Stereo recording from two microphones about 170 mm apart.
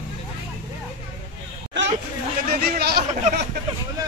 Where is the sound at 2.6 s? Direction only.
70° right (ahead or behind).